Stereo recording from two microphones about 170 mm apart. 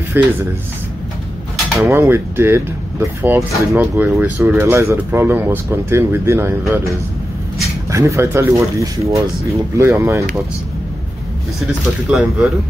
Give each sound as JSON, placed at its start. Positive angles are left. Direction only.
{"t": 0.2, "sound": "speech", "side_deg": -10}
{"t": 1.8, "sound": "speech", "side_deg": -15}
{"t": 12.1, "sound": "speech", "side_deg": -5}